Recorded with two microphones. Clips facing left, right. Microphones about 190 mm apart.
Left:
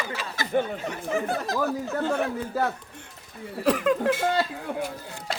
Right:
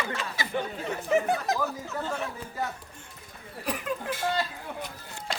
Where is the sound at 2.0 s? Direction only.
65° left (ahead or behind).